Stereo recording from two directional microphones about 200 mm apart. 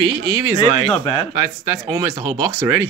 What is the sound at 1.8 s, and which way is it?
Speech, 20° right (ahead or behind).